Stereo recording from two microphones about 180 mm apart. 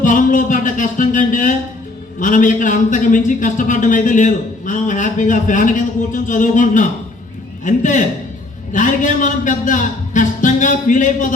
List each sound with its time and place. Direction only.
0.0 s music: 50° left (ahead or behind)
2.1 s a man's voice: 45° left (ahead or behind)